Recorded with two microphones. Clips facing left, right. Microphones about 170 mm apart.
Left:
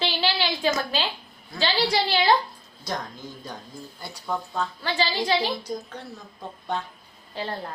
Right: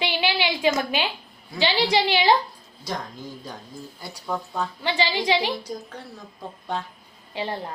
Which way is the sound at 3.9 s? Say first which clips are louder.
Even; 5° right (ahead or behind).